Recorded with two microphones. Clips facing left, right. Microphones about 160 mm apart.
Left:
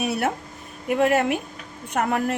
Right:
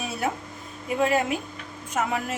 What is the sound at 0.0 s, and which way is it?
Speech, 70° left (ahead or behind).